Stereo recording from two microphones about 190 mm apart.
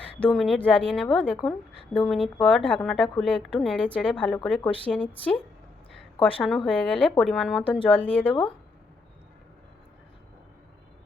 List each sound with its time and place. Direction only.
0.0 s a woman's voice: 5° left (ahead or behind)
6.1 s a woman's voice: 30° left (ahead or behind)
6.4 s a woman's voice: centre (ahead or behind)